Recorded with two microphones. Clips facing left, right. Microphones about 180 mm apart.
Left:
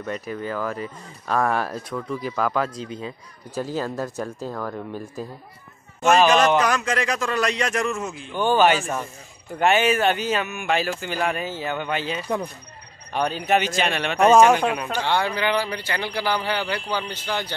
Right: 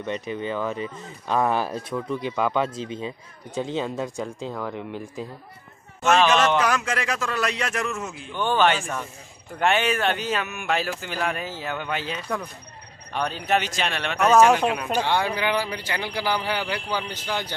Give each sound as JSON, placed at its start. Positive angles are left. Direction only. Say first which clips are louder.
{"t": 0.0, "sound": "speech", "louder": "right 1 dB", "side_deg": 5}
{"t": 2.7, "sound": "speech", "louder": "right 1 dB", "side_deg": -30}
{"t": 3.5, "sound": "speech", "louder": "even", "side_deg": 0}
{"t": 4.7, "sound": "speech", "louder": "left 1 dB", "side_deg": -15}
{"t": 6.0, "sound": "speech", "louder": "left 2 dB", "side_deg": 10}
{"t": 6.6, "sound": "speech", "louder": "left 2 dB", "side_deg": -5}
{"t": 8.3, "sound": "speech", "louder": "left 3 dB", "side_deg": 10}
{"t": 14.9, "sound": "speech", "louder": "even", "side_deg": -15}